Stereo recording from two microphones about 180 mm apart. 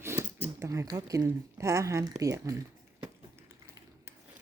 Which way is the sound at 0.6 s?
15° right (ahead or behind).